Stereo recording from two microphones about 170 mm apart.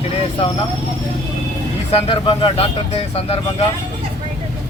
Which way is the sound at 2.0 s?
30° left (ahead or behind).